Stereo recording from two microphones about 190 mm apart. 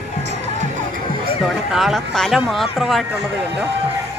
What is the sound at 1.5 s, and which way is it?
Speech, centre (ahead or behind).